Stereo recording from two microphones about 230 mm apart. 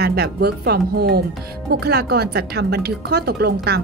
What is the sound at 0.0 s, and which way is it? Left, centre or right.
Speech, right.